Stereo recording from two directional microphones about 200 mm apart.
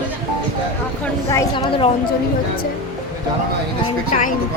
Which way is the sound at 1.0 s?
15° left (ahead or behind).